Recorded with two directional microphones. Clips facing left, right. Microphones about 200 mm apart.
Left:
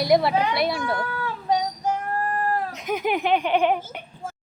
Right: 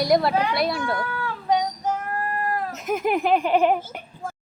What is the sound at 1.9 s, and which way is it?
Child singing, 30° left (ahead or behind).